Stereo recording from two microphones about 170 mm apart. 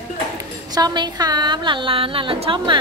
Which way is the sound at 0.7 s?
25° right (ahead or behind).